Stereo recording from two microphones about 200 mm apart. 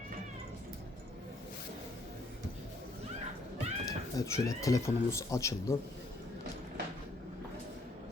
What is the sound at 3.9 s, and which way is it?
Speech, 15° left (ahead or behind).